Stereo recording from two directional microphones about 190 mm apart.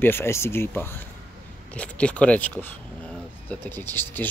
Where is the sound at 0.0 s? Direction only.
10° left (ahead or behind).